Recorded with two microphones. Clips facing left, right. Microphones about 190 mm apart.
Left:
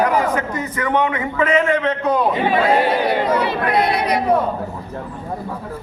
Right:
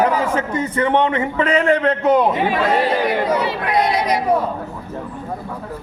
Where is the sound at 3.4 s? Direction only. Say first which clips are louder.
Left 1 dB; 55° left (ahead or behind).